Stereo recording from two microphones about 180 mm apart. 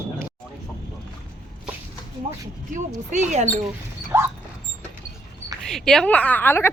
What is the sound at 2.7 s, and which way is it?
Speech, 45° right (ahead or behind).